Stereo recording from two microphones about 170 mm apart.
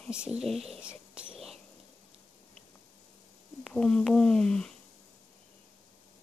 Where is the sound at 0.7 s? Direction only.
5° right (ahead or behind).